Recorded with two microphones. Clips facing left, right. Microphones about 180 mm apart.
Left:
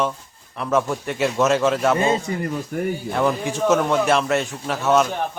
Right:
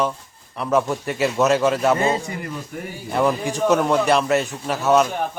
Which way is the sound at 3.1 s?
Centre (ahead or behind).